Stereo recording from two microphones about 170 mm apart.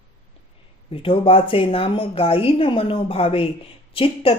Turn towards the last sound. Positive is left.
turn(degrees=35)  # may be behind; listen again after turning